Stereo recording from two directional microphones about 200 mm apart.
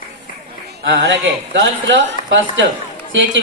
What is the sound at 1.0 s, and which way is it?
A man's voice, 65° right (ahead or behind).